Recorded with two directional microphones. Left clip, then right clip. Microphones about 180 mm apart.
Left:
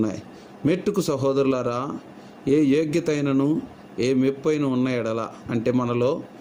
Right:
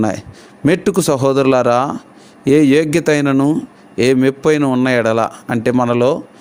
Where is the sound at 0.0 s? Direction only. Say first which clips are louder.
Right 8 dB; 55° right (ahead or behind).